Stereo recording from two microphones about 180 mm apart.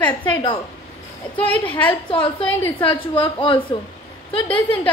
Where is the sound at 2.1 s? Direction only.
30° left (ahead or behind).